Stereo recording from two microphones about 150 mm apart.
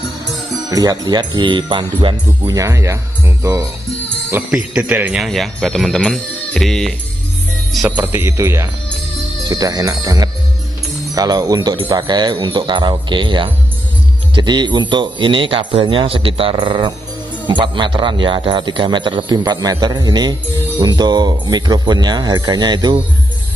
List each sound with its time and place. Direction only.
0.7 s speech: 25° right (ahead or behind)
5.2 s speech: centre (ahead or behind)
7.9 s speech: 15° right (ahead or behind)